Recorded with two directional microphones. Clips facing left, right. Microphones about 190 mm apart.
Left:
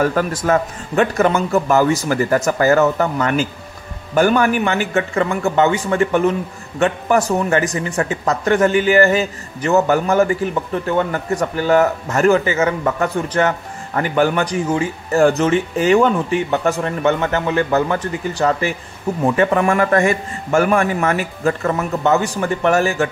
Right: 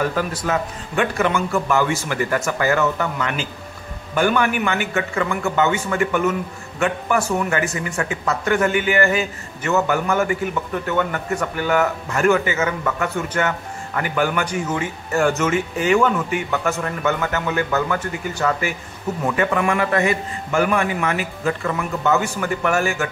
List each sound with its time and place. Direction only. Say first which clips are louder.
0.0 s a man's voice: left 5 dB; 50° left (ahead or behind)